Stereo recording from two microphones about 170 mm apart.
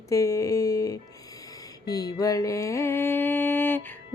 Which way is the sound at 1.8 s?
20° left (ahead or behind).